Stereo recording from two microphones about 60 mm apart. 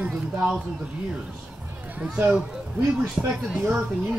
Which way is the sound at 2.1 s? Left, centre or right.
Centre.